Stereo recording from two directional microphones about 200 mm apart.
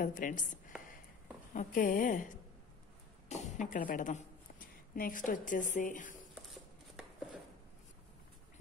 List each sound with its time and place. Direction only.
0.0 s a woman's voice: 40° left (ahead or behind)
1.5 s a woman's voice: 40° left (ahead or behind)